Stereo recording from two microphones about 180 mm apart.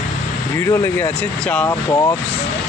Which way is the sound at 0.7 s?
10° left (ahead or behind).